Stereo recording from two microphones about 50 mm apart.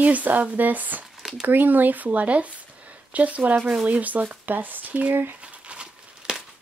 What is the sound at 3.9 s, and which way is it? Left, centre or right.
Speech, right.